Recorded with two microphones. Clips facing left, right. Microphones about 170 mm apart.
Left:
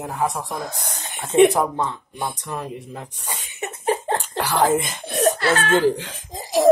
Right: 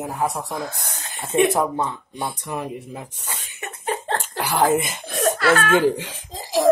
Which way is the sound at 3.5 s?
20° left (ahead or behind).